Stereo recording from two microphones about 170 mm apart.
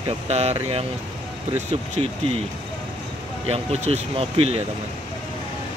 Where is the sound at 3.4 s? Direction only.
40° right (ahead or behind).